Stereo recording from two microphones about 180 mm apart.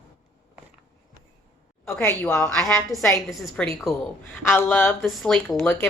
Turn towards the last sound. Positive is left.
turn(degrees=0)  # may be behind; listen again after turning